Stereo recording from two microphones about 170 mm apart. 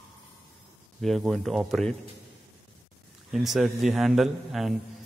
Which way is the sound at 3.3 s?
Centre (ahead or behind).